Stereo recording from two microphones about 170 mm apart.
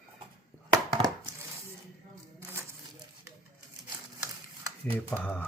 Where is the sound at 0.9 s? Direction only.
25° right (ahead or behind).